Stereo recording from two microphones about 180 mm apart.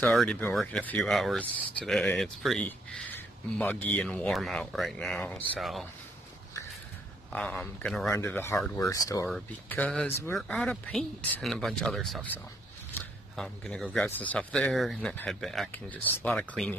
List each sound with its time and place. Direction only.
0.0 s speech: centre (ahead or behind)
7.3 s speech: 5° left (ahead or behind)
8.1 s speech: 15° left (ahead or behind)
9.3 s speech: 5° left (ahead or behind)
13.4 s speech: 5° left (ahead or behind)